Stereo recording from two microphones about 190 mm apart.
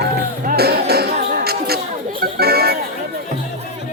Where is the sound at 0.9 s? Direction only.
55° right (ahead or behind).